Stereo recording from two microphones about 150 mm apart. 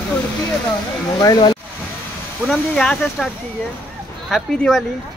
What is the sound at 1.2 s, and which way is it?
Speech, 25° left (ahead or behind).